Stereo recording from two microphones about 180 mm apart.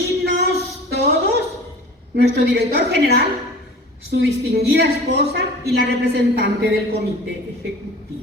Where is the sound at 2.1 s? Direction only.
70° right (ahead or behind).